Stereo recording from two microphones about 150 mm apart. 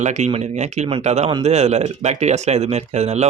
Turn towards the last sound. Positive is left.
turn(degrees=-50)  # may be behind; listen again after turning